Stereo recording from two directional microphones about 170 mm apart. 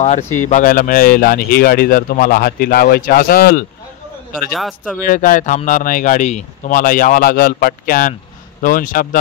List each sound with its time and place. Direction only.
0.0 s speech: 40° left (ahead or behind); by 3.6 s 65° left (ahead or behind)
4.3 s a man's voice: centre (ahead or behind)
5.0 s speech: 55° left (ahead or behind)